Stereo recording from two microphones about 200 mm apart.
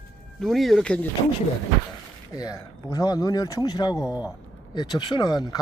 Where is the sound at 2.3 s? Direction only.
15° left (ahead or behind).